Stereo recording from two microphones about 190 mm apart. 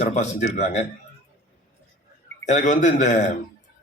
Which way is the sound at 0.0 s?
35° left (ahead or behind).